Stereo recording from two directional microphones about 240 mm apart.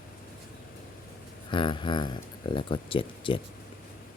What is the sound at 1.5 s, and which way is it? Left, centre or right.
Speech, centre.